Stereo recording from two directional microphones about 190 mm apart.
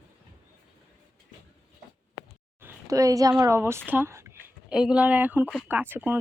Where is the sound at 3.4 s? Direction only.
15° right (ahead or behind).